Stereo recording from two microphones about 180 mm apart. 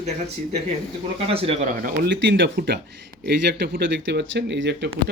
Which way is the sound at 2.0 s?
80° right.